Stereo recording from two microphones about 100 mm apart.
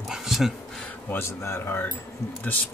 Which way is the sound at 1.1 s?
30° left (ahead or behind).